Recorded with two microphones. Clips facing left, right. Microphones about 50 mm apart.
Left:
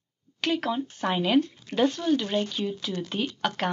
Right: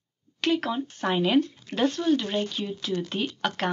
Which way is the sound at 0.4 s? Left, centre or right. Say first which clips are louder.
Right 1 dB; centre.